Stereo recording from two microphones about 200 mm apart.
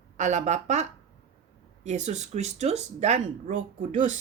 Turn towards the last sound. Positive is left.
turn(degrees=-40)  # may be behind; listen again after turning